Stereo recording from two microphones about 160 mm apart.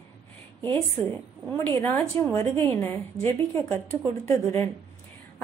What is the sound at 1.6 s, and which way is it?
A woman's voice, 15° left (ahead or behind).